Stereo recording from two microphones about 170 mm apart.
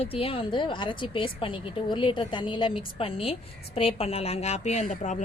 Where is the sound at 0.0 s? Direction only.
35° left (ahead or behind).